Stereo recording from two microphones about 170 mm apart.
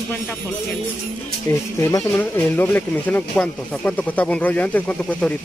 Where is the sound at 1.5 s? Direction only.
20° left (ahead or behind).